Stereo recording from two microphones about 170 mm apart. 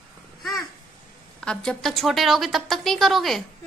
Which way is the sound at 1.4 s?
5° left (ahead or behind).